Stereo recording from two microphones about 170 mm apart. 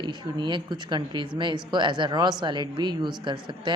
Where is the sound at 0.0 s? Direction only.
25° right (ahead or behind).